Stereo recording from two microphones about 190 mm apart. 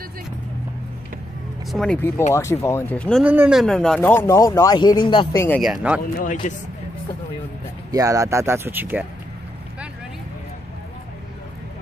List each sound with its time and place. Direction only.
1.7 s speech: 5° left (ahead or behind)
3.3 s speech: 5° right (ahead or behind); by 5.3 s 25° left (ahead or behind)
5.3 s speech: 15° left (ahead or behind)
5.6 s speech: 5° right (ahead or behind)
6.1 s a man's voice: 45° left (ahead or behind)
7.9 s speech: 15° right (ahead or behind)